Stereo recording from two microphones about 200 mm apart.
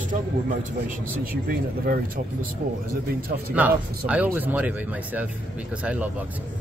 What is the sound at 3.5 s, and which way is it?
Speech, 5° right (ahead or behind).